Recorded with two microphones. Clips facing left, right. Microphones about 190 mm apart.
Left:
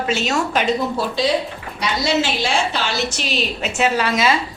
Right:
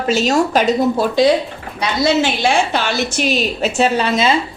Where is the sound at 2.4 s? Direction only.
55° right (ahead or behind).